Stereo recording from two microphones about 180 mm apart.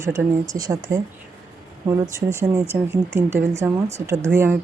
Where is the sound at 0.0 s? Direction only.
15° right (ahead or behind).